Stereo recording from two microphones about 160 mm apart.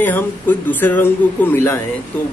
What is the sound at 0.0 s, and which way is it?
Speech, 10° left (ahead or behind).